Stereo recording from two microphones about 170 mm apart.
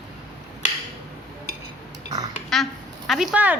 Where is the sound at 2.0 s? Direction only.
20° right (ahead or behind).